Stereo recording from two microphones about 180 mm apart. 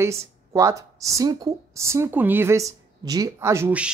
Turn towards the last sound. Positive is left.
turn(degrees=-10)  # may be behind; listen again after turning